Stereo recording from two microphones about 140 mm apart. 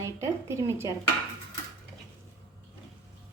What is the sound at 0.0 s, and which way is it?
Speech, 20° right (ahead or behind).